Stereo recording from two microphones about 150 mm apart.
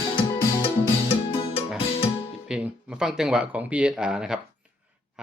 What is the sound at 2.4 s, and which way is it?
Speech, 5° right (ahead or behind).